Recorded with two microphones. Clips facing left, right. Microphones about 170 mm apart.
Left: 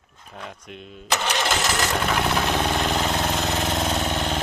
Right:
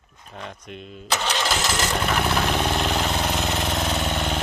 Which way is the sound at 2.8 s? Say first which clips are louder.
Left 1 dB; centre (ahead or behind).